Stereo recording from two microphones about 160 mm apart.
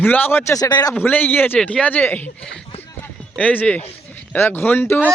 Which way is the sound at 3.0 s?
10° left (ahead or behind).